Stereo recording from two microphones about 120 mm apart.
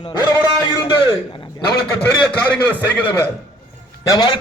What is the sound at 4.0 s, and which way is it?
Speech, 35° left (ahead or behind).